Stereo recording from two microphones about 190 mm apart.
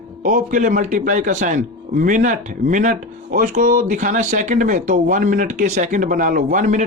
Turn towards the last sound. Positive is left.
turn(degrees=-40)  # may be behind; listen again after turning